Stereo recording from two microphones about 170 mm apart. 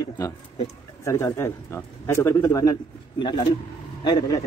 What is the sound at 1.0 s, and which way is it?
A man's voice, 15° left (ahead or behind).